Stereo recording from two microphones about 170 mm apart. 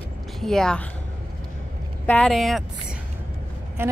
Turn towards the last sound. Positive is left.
turn(degrees=-15)  # may be behind; listen again after turning